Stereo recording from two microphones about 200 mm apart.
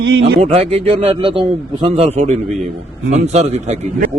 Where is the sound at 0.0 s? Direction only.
65° right (ahead or behind).